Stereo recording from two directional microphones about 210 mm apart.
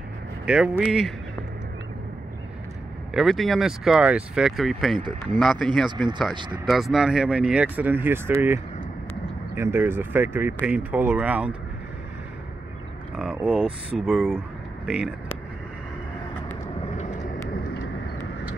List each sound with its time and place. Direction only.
0.5 s speech: 5° right (ahead or behind)
3.2 s speech: centre (ahead or behind)
5.9 s speech: 20° right (ahead or behind)
6.6 s speech: centre (ahead or behind)
9.6 s speech: 10° right (ahead or behind)
13.1 s speech: 5° right (ahead or behind)
16.6 s vehicle: 30° left (ahead or behind)